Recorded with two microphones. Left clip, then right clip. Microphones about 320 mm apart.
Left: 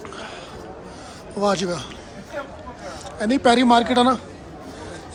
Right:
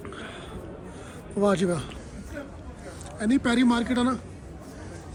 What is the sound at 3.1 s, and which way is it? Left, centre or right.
Speech, centre.